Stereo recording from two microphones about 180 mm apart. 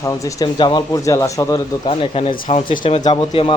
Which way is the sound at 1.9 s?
35° left (ahead or behind).